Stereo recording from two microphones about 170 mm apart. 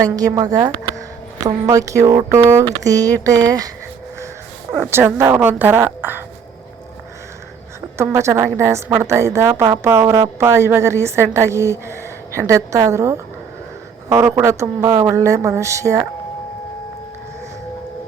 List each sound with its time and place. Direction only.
0.0 s a woman's voice: 20° right (ahead or behind)
4.8 s a woman's voice: 15° right (ahead or behind)
7.9 s a woman's voice: 15° right (ahead or behind)